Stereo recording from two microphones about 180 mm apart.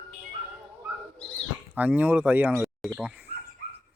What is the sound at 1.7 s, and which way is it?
Speech, 10° right (ahead or behind).